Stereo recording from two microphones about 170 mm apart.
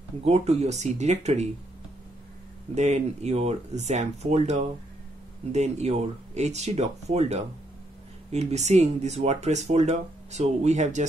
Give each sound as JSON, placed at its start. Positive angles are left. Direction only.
{"t": 0.2, "sound": "speech", "side_deg": -40}
{"t": 2.7, "sound": "speech", "side_deg": -40}